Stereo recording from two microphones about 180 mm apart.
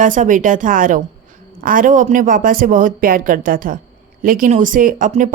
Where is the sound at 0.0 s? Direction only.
45° right (ahead or behind).